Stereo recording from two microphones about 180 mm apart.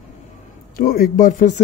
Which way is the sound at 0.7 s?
55° left (ahead or behind).